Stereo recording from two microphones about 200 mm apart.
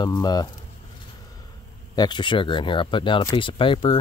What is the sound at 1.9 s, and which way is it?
Speech, 20° left (ahead or behind).